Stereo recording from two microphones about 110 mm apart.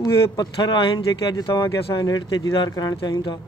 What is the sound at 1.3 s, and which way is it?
Speech, 35° left (ahead or behind).